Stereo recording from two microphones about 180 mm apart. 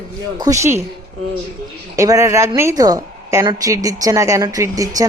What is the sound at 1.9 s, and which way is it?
A woman's voice, 20° right (ahead or behind).